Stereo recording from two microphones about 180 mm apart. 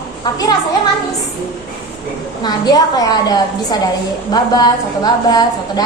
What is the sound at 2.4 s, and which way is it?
A woman's voice, 20° left (ahead or behind).